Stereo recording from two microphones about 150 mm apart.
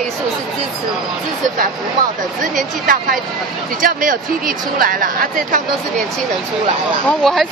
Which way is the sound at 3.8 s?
65° right (ahead or behind).